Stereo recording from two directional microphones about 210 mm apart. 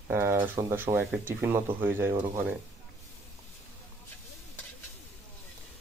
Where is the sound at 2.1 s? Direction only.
25° right (ahead or behind).